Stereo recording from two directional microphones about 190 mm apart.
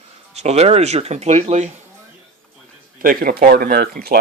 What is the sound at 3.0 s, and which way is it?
Speech, 45° right (ahead or behind).